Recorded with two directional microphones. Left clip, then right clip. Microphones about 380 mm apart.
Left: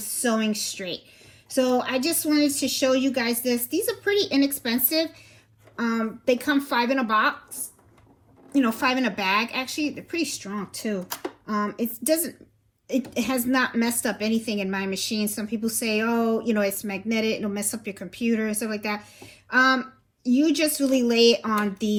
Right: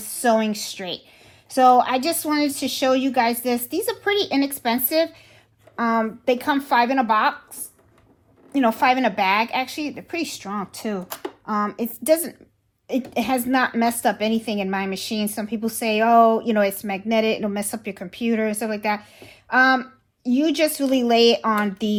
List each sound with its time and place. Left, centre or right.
0.0 s a woman's voice: right